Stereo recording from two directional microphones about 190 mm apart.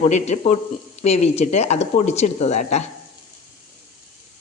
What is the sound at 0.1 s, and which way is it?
Speech, 35° left (ahead or behind).